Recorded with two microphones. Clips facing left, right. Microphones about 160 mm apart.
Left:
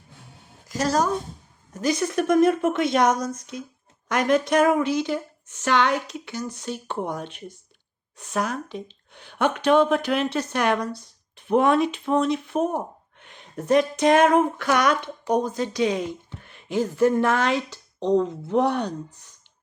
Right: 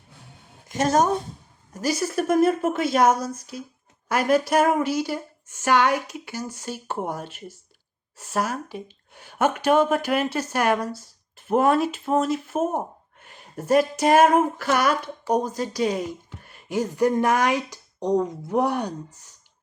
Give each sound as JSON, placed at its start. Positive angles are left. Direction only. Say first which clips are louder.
{"t": 0.7, "sound": "a woman's voice", "louder": "right 2 dB", "side_deg": -20}
{"t": 1.7, "sound": "a woman's voice", "louder": "left 1 dB", "side_deg": -5}